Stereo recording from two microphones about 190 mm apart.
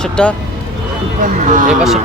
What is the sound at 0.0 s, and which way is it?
Speech, 5° left (ahead or behind).